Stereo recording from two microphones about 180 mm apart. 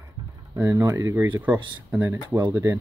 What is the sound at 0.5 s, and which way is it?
Speech, 15° right (ahead or behind).